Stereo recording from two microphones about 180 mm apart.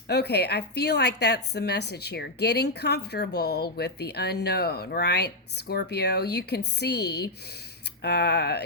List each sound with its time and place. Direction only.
0.1 s a woman's voice: 65° left (ahead or behind)